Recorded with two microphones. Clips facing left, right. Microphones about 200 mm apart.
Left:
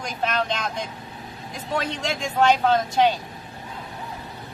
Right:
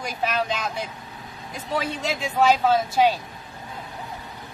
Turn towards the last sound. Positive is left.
turn(degrees=-5)  # may be behind; listen again after turning